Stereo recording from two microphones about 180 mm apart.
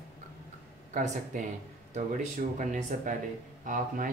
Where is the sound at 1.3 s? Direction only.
45° right (ahead or behind).